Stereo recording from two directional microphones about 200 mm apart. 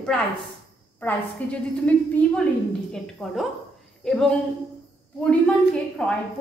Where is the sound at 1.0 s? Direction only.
5° left (ahead or behind).